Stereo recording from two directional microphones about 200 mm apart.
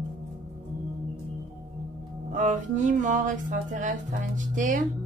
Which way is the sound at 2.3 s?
40° right (ahead or behind).